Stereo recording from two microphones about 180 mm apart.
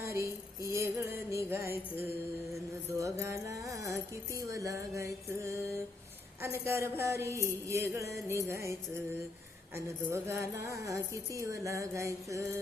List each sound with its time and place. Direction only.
0.0 s music: 15° right (ahead or behind)
3.0 s a woman's voice: 15° right (ahead or behind)
9.7 s a woman's voice: 15° right (ahead or behind)